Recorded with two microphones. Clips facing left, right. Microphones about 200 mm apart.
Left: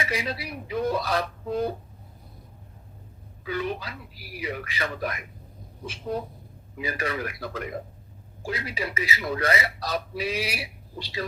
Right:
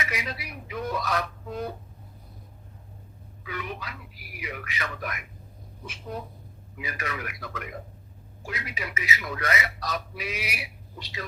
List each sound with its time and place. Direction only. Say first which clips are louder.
0.0 s speech: left 4 dB; 30° left (ahead or behind)
3.4 s speech: left 6 dB; 30° left (ahead or behind)